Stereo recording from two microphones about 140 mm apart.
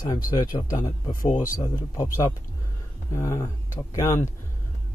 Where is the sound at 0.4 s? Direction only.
30° left (ahead or behind).